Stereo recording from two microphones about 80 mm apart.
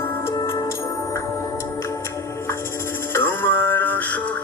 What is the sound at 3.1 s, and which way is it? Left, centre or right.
Music, left.